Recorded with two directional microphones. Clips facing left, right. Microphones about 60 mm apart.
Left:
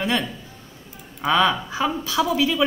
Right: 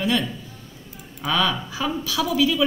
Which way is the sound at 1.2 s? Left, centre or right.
Left.